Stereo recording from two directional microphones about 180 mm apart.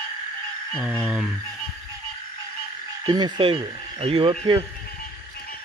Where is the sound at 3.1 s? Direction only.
25° right (ahead or behind).